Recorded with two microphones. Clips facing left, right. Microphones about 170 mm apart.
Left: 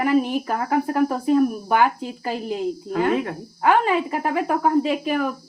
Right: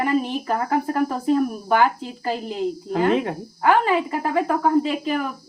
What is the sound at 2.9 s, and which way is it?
Speech, 25° right (ahead or behind).